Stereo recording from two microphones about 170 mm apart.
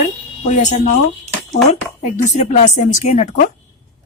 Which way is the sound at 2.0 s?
45° left (ahead or behind).